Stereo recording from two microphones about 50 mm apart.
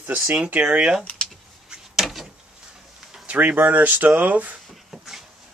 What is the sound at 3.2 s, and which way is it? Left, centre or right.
Speech, right.